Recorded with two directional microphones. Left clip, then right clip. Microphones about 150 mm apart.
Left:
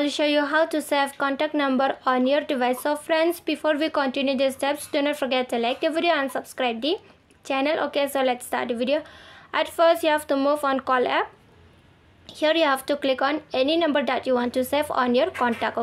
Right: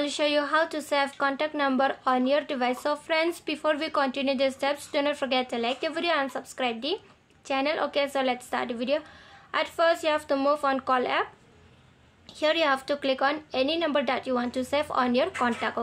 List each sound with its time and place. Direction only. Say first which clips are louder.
0.0 s a woman's voice: left 3 dB; 25° left (ahead or behind)
12.4 s a woman's voice: left 3 dB; 30° left (ahead or behind)